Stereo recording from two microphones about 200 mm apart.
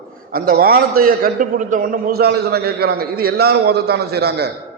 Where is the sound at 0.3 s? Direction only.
45° right (ahead or behind).